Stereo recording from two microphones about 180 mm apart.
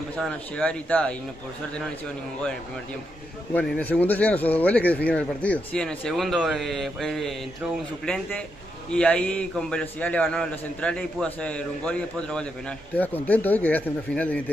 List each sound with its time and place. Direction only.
0.1 s a man's voice: 5° left (ahead or behind)
3.5 s a man's voice: 10° left (ahead or behind)